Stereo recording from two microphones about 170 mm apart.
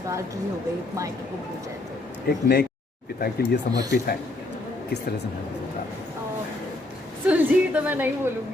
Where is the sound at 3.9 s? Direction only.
65° left (ahead or behind).